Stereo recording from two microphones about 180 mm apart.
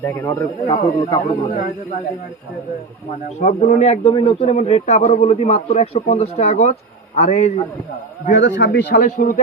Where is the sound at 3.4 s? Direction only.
45° left (ahead or behind).